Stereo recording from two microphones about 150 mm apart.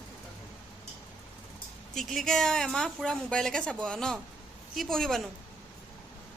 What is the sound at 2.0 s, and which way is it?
A woman's voice, centre (ahead or behind).